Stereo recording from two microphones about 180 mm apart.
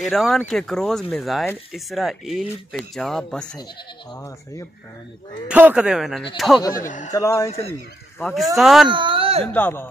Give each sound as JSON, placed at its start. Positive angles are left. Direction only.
{"t": 0.1, "sound": "speech", "side_deg": 0}
{"t": 4.1, "sound": "speech", "side_deg": 15}
{"t": 5.5, "sound": "speech", "side_deg": -10}
{"t": 6.6, "sound": "speech", "side_deg": 20}
{"t": 8.3, "sound": "speech", "side_deg": 0}
{"t": 8.8, "sound": "speech", "side_deg": -30}
{"t": 9.5, "sound": "speech", "side_deg": 10}